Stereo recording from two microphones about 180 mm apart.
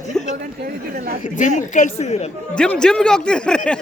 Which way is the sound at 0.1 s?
40° left (ahead or behind).